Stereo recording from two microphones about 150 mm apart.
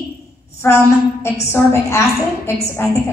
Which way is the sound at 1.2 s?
15° left (ahead or behind).